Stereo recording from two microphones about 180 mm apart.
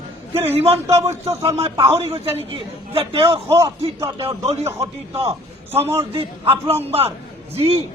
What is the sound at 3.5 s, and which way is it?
Speech, 15° right (ahead or behind).